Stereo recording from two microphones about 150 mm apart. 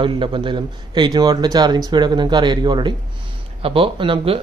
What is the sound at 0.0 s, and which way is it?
Speech, 35° right (ahead or behind).